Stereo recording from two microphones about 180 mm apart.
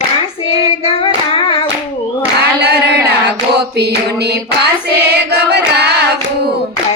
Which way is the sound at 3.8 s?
65° right (ahead or behind).